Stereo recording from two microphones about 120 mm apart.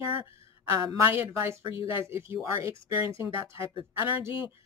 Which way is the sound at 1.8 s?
45° left (ahead or behind).